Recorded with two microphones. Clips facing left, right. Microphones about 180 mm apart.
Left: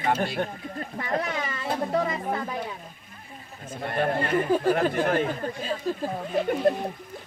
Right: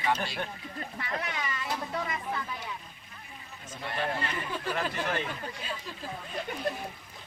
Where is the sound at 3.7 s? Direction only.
50° left (ahead or behind).